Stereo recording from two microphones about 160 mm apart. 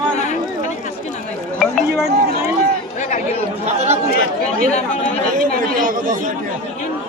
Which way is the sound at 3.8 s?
45° right (ahead or behind).